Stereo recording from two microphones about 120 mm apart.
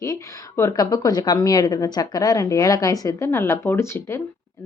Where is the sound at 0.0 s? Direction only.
25° left (ahead or behind).